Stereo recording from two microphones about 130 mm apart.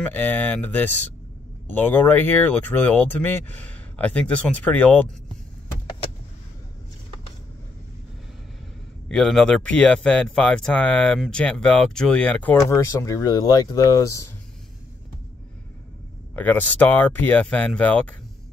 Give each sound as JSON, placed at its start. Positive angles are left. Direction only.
{"t": 0.0, "sound": "speech", "side_deg": 15}
{"t": 9.1, "sound": "speech", "side_deg": 5}
{"t": 12.5, "sound": "speech", "side_deg": 25}
{"t": 16.3, "sound": "speech", "side_deg": 15}